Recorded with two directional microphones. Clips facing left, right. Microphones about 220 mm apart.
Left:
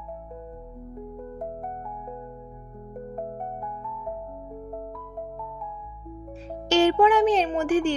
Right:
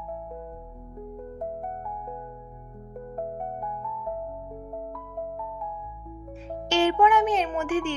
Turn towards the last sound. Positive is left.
turn(degrees=35)  # may be behind; listen again after turning